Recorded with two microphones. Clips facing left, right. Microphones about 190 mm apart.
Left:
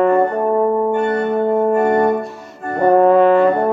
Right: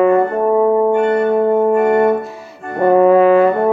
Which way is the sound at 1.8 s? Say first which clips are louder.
Right 2 dB; 35° left (ahead or behind).